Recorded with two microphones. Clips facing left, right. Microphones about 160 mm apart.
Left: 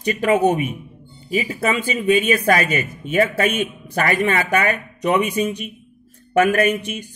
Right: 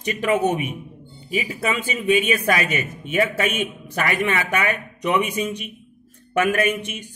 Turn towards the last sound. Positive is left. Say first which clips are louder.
# left 3 dB
turn(degrees=35)  # may be behind; listen again after turning